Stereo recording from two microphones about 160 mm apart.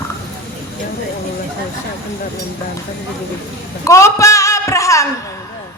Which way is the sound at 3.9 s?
20° left (ahead or behind).